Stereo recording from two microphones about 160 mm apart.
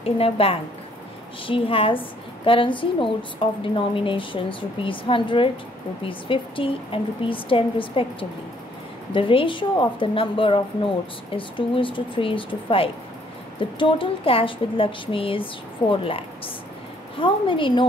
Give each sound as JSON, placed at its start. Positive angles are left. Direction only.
{"t": 0.0, "sound": "a woman's voice", "side_deg": 35}